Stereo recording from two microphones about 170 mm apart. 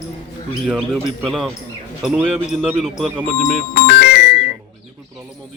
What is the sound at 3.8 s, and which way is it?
Music, 70° left (ahead or behind).